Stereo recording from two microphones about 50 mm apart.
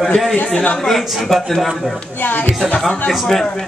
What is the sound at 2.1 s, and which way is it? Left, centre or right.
Speech, left.